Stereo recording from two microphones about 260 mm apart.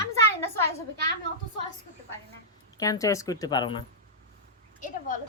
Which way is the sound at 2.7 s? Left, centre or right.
Centre.